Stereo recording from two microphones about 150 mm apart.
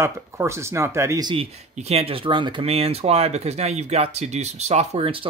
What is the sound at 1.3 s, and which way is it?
Speech, 40° right (ahead or behind).